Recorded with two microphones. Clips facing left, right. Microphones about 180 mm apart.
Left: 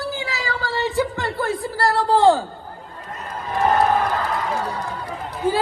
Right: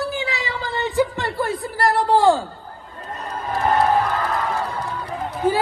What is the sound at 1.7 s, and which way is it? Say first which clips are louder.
Speech: right 1 dB; 20° right (ahead or behind).